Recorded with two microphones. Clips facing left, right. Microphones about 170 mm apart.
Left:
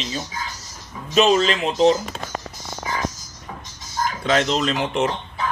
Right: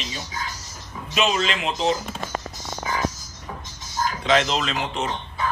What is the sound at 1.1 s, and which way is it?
Speech, 35° left (ahead or behind).